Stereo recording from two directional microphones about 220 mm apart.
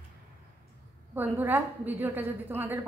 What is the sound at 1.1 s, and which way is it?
A woman's voice, 10° right (ahead or behind).